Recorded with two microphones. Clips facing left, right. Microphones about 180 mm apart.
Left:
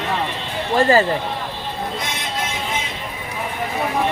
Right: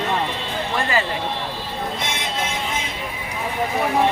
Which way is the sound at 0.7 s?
40° left (ahead or behind).